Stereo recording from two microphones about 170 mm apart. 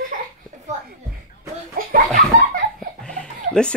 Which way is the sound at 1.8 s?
55° right (ahead or behind).